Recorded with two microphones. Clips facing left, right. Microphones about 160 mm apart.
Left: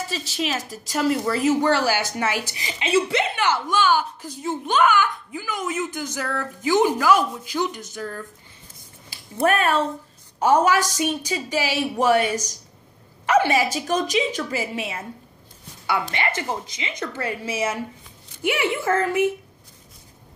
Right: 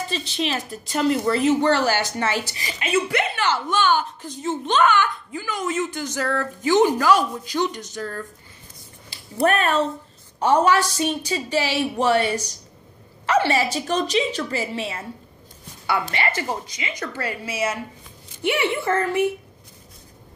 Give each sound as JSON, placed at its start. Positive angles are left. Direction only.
{"t": 0.3, "sound": "a woman's voice", "side_deg": 5}
{"t": 9.4, "sound": "a woman's voice", "side_deg": 5}
{"t": 13.3, "sound": "a sound", "side_deg": 15}
{"t": 13.7, "sound": "a woman's voice", "side_deg": 10}
{"t": 18.4, "sound": "speech", "side_deg": 5}